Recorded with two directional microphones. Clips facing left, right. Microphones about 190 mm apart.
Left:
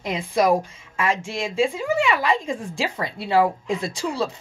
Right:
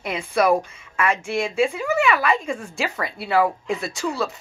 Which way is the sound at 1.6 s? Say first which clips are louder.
Left 1 dB; 30° left (ahead or behind).